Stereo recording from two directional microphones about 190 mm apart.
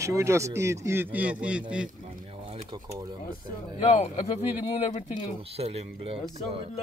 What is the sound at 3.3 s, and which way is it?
Speech, 40° left (ahead or behind).